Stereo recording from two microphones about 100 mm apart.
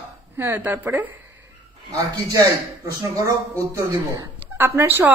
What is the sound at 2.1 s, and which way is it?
Speech, 40° right (ahead or behind).